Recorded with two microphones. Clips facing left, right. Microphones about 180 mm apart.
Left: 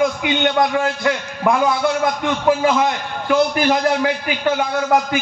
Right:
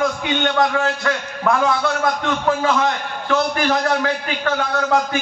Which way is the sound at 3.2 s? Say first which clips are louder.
Left 3 dB; 15° left (ahead or behind).